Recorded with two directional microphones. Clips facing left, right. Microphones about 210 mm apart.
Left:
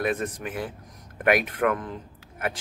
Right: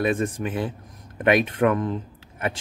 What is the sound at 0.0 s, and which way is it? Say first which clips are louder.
A man's voice: right 4 dB; 30° right (ahead or behind).